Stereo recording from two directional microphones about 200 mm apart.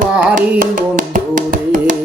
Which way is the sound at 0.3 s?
40° right (ahead or behind).